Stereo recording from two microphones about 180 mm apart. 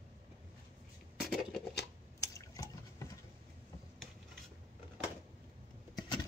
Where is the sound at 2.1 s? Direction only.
20° left (ahead or behind).